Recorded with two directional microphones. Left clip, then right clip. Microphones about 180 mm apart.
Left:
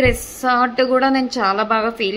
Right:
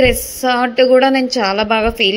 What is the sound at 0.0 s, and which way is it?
A woman's voice, 15° right (ahead or behind).